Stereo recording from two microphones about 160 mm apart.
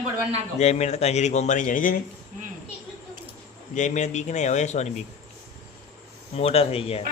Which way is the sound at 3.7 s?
50° left (ahead or behind).